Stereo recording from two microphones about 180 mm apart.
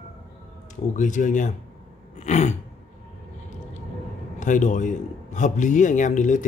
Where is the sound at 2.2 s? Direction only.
40° left (ahead or behind).